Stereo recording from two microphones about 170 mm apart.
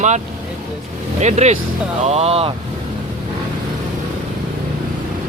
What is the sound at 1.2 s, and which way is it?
Speech, 40° right (ahead or behind).